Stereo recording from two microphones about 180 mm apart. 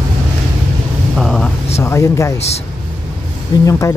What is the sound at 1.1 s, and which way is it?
Vehicle, centre (ahead or behind).